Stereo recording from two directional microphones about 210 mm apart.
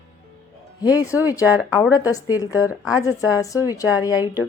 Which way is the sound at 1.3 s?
15° left (ahead or behind).